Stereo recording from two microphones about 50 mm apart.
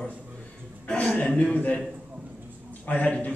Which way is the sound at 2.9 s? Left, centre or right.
Left.